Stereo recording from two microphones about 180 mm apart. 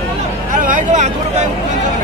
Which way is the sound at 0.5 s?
45° right (ahead or behind).